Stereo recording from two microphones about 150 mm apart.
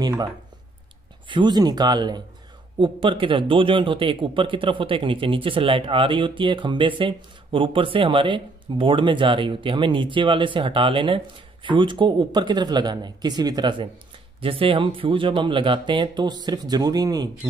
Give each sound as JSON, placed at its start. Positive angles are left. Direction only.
{"t": 1.3, "sound": "speech", "side_deg": -30}